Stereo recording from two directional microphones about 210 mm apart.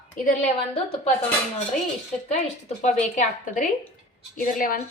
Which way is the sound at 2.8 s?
35° left (ahead or behind).